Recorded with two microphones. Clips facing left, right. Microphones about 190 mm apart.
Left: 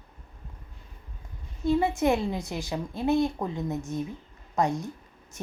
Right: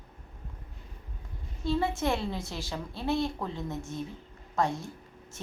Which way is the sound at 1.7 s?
15° left (ahead or behind).